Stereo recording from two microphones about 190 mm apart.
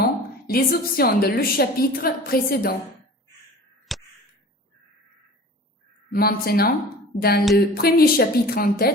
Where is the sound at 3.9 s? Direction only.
Centre (ahead or behind).